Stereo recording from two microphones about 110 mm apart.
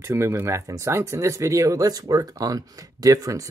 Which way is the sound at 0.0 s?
20° right (ahead or behind).